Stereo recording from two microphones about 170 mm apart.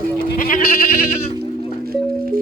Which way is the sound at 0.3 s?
55° left (ahead or behind).